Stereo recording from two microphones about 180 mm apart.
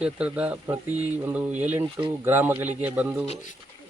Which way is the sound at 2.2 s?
10° right (ahead or behind).